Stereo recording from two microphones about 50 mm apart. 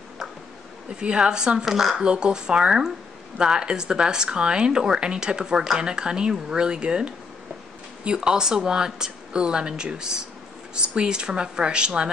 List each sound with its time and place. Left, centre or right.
0.9 s speech: right
2.0 s speech: centre